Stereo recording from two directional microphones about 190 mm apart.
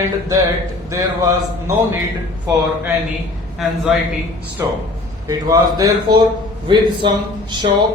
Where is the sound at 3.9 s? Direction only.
Centre (ahead or behind).